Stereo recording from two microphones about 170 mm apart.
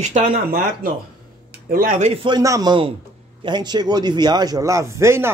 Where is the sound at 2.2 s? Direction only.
20° right (ahead or behind).